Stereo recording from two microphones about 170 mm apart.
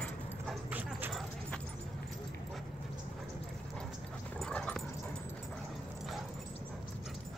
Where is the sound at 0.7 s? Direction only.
10° right (ahead or behind).